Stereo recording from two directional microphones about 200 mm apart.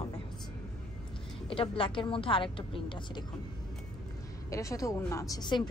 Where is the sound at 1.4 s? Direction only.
25° left (ahead or behind).